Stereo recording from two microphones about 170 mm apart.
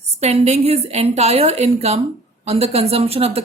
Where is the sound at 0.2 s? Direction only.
40° right (ahead or behind).